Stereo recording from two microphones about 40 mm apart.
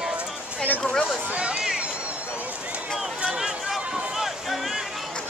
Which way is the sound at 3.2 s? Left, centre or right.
Centre.